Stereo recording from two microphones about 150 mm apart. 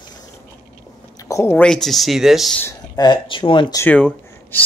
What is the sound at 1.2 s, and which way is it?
Speech, 20° left (ahead or behind).